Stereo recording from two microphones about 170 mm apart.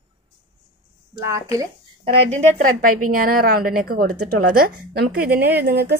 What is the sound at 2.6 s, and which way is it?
Speech, 55° right (ahead or behind).